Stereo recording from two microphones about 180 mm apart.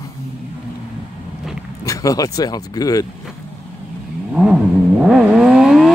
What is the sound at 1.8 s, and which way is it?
Speech, 20° left (ahead or behind).